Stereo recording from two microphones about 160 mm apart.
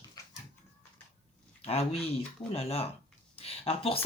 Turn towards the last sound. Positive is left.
turn(degrees=35)  # may be behind; listen again after turning